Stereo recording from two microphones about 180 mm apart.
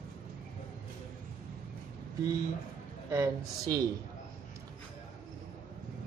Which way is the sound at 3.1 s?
20° right (ahead or behind).